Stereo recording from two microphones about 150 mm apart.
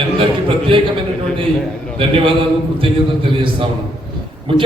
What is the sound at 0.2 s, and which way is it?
A man's voice, 35° right (ahead or behind).